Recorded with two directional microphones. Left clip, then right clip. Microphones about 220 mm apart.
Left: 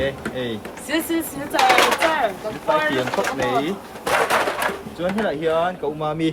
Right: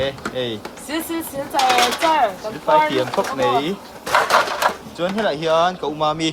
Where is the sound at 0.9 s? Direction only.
10° right (ahead or behind).